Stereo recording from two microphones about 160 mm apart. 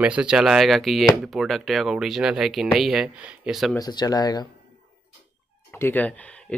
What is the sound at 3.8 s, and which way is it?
Speech, 25° left (ahead or behind).